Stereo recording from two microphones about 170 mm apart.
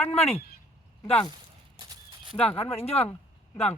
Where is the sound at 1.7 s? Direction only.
30° right (ahead or behind).